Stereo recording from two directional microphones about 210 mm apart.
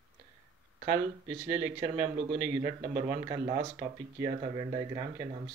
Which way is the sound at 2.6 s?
25° right (ahead or behind).